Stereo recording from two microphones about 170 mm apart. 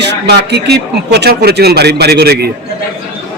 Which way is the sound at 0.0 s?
80° right.